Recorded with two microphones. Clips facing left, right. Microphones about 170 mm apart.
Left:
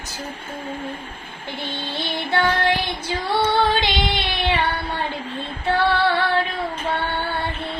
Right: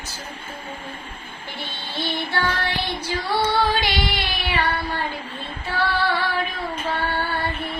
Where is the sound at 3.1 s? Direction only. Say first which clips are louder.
Left 2 dB; 25° left (ahead or behind).